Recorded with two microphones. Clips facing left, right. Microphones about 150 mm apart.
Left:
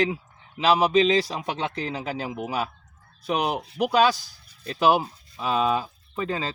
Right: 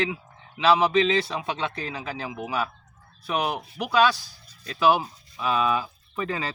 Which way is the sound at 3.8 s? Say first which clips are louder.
Left 1 dB; 40° left (ahead or behind).